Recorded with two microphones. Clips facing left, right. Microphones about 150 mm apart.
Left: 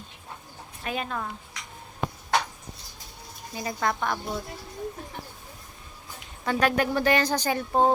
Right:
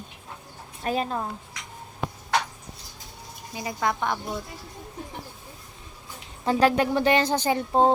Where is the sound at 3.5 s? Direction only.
15° right (ahead or behind).